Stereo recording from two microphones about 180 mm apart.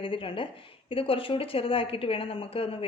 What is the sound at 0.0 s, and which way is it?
A woman's voice, 30° left (ahead or behind).